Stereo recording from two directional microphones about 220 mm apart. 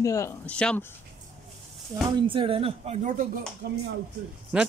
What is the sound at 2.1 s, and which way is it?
Speech, 25° right (ahead or behind).